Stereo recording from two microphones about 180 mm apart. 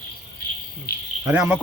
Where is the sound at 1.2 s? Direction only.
5° right (ahead or behind).